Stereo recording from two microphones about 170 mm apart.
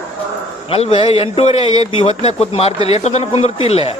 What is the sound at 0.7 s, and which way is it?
Speech, 35° left (ahead or behind).